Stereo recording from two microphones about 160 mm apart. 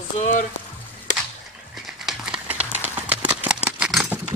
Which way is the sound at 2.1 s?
10° right (ahead or behind).